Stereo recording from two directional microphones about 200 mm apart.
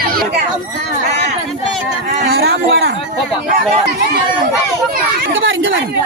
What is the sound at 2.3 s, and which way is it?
Speech, 55° right (ahead or behind).